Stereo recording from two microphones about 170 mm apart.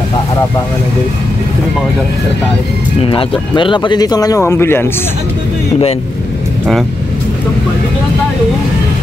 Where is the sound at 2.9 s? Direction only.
30° left (ahead or behind); by 4.9 s 15° left (ahead or behind).